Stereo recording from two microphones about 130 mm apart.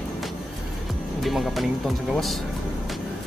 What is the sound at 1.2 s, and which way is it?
Speech, centre (ahead or behind).